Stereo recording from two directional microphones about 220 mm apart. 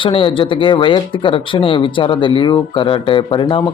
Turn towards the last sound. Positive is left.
turn(degrees=20)  # may be behind; listen again after turning